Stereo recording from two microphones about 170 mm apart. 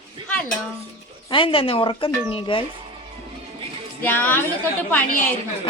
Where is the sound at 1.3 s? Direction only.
30° left (ahead or behind).